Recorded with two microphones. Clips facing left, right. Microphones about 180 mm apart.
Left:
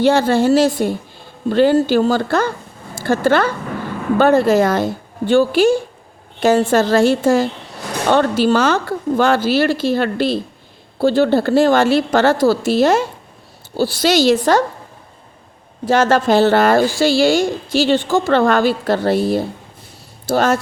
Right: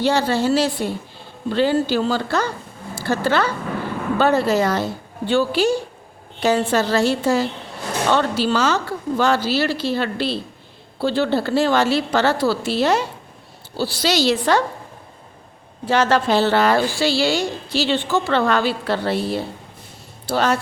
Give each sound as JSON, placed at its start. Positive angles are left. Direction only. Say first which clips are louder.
{"t": 0.0, "sound": "a woman's voice", "louder": "left 5 dB", "side_deg": 50}
{"t": 15.9, "sound": "a woman's voice", "louder": "left 4 dB", "side_deg": 45}